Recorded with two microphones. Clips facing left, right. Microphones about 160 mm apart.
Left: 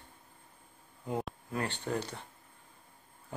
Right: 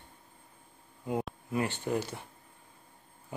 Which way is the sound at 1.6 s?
10° right (ahead or behind).